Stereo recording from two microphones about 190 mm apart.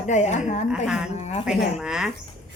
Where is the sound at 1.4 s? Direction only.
5° right (ahead or behind).